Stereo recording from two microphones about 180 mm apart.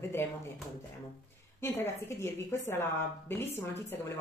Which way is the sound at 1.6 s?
15° left (ahead or behind).